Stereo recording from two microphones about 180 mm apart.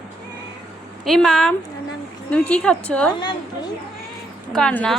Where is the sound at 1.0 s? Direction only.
Centre (ahead or behind).